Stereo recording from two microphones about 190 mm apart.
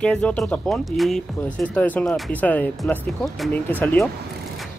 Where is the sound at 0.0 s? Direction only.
5° left (ahead or behind).